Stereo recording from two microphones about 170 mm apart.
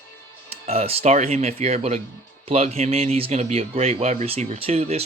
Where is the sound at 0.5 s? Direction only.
35° right (ahead or behind).